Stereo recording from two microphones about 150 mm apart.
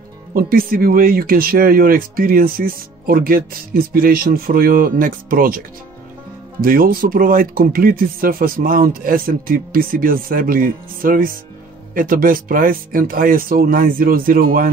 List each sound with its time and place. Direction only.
0.3 s speech: 75° right (ahead or behind)
6.6 s speech: 75° right (ahead or behind)